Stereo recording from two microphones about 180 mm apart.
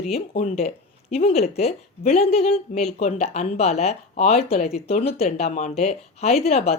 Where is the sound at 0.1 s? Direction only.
40° left (ahead or behind).